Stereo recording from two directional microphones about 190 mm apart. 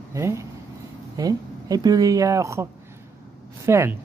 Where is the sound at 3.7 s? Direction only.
15° right (ahead or behind).